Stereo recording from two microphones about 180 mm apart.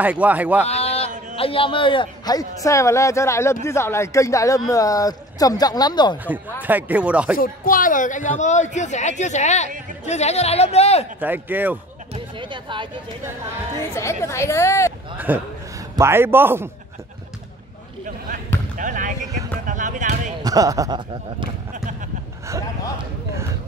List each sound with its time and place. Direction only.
0.0 s a man's voice: 10° right (ahead or behind)
0.7 s a sound: 35° left (ahead or behind)
1.3 s speech: 30° left (ahead or behind)
6.6 s a man's voice: 10° right (ahead or behind)
7.3 s a man's voice: 50° left (ahead or behind); by 11.1 s 35° left (ahead or behind)
11.1 s a man's voice: 10° right (ahead or behind)
12.1 s a sound: 25° right (ahead or behind)
13.7 s a woman's voice: 15° left (ahead or behind)
15.1 s a man's voice: 10° right (ahead or behind)
18.8 s a sound: 45° right (ahead or behind)
19.6 s speech: 45° right (ahead or behind)
20.4 s speech: 20° right (ahead or behind)